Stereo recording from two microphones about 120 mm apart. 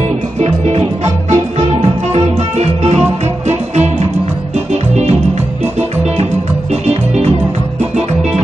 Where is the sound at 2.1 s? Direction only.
65° right (ahead or behind).